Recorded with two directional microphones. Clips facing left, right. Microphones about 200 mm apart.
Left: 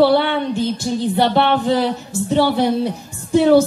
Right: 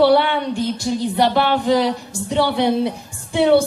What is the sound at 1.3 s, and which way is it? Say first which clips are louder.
Speech: left 1 dB; 30° left (ahead or behind).